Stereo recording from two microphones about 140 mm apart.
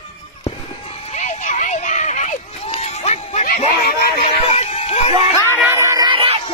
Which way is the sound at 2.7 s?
50° left (ahead or behind).